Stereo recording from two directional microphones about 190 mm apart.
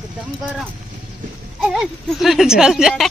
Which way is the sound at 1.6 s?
Centre (ahead or behind).